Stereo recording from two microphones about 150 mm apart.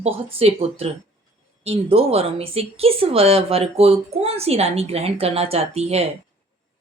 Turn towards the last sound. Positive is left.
turn(degrees=-45)  # may be behind; listen again after turning